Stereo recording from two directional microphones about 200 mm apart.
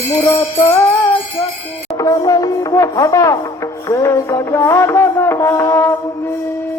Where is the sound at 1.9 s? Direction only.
20° left (ahead or behind).